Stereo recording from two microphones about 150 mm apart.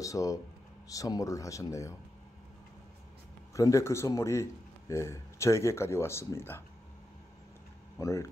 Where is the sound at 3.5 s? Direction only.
20° left (ahead or behind).